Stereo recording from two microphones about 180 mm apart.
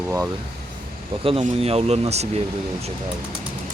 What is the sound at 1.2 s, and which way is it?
Speech, 30° right (ahead or behind).